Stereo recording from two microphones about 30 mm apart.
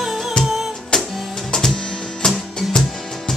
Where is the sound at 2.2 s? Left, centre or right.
Left.